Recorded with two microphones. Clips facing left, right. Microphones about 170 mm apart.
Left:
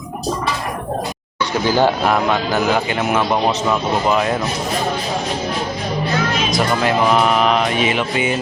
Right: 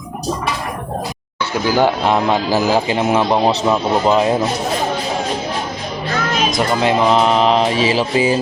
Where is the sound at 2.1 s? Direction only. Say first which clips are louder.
Right 2 dB; 30° right (ahead or behind).